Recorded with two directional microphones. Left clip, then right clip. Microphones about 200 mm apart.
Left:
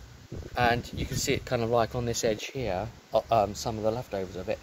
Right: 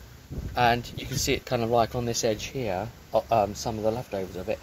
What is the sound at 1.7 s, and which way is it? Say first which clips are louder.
Speech: right 3 dB; 5° left (ahead or behind).